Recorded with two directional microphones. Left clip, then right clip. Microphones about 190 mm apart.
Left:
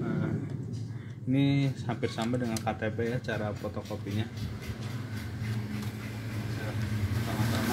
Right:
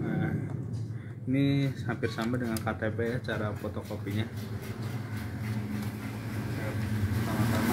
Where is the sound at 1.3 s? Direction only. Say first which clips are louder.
Even; 35° left (ahead or behind).